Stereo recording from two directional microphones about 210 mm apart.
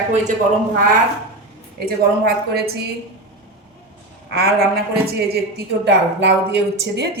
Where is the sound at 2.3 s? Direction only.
50° right (ahead or behind).